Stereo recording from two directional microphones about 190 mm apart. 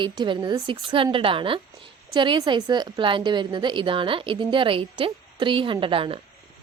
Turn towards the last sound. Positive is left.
turn(degrees=-30)  # may be behind; listen again after turning